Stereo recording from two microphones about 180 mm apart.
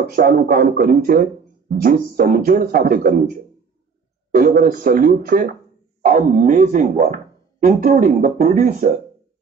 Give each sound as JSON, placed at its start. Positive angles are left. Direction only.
{"t": 0.0, "sound": "speech", "side_deg": -55}